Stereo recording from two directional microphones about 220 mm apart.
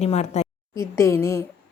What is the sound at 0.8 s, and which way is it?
Speech, 10° left (ahead or behind).